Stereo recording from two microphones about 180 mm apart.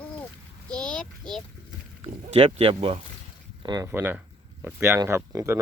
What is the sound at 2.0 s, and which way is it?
Speech, 35° right (ahead or behind).